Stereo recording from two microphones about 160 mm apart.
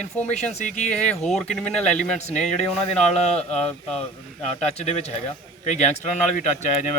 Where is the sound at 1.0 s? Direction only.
5° left (ahead or behind).